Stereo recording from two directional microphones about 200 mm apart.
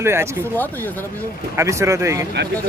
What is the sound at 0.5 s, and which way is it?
Speech, 10° left (ahead or behind).